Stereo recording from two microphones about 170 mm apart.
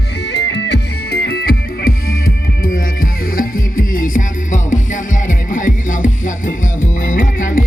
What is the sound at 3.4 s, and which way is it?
Music, 55° left (ahead or behind).